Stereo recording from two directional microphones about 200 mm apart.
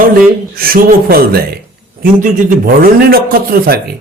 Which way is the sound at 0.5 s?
45° right (ahead or behind).